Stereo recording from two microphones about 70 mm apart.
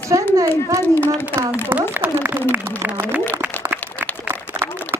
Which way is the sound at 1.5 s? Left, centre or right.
Right.